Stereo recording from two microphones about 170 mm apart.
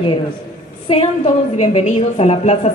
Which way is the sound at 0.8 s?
35° left (ahead or behind).